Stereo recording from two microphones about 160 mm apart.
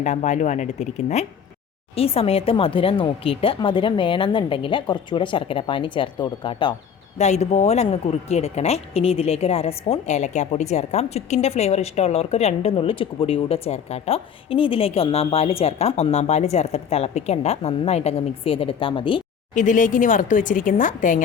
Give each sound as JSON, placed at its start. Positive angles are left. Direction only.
{"t": 0.0, "sound": "speech", "side_deg": 50}
{"t": 7.2, "sound": "speech", "side_deg": 45}
{"t": 19.5, "sound": "speech", "side_deg": 55}